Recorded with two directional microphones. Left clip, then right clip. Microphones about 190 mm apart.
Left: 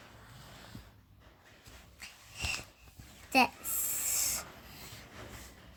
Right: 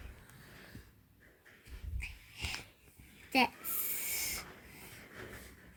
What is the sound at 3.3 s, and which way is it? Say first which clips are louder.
Speech: left 3 dB; 35° left (ahead or behind).